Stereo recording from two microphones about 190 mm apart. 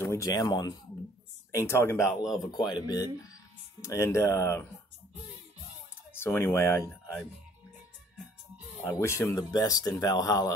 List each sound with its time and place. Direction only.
0.0 s speech: 15° left (ahead or behind)
6.1 s speech: 10° left (ahead or behind)
8.9 s speech: 15° left (ahead or behind)